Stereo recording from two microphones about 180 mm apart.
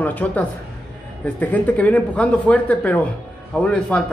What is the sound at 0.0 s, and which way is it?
A man's voice, 10° left (ahead or behind).